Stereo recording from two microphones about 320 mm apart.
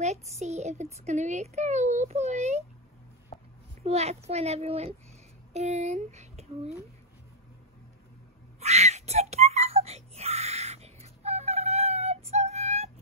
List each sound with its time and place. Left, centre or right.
0.0 s a child's voice: right
3.8 s a child's voice: centre
8.5 s wail: centre